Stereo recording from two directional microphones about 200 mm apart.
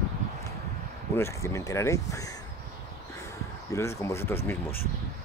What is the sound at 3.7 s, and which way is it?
Speech, 15° left (ahead or behind).